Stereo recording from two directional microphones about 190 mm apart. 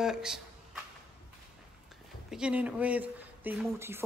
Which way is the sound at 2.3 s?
5° right (ahead or behind).